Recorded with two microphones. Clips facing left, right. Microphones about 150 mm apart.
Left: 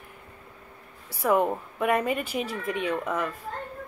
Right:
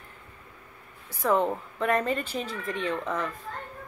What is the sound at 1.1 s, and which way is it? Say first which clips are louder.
Speech: left 1 dB; 10° left (ahead or behind).